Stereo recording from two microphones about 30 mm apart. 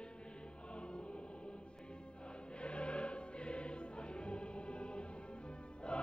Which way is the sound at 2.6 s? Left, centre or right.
Left.